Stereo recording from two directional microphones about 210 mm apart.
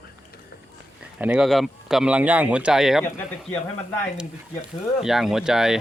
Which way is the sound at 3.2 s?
10° left (ahead or behind).